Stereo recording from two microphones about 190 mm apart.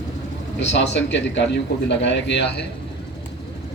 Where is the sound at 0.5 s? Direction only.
65° left (ahead or behind).